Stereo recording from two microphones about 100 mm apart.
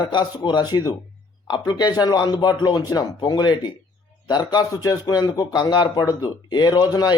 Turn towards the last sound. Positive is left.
turn(degrees=40)  # may be behind; listen again after turning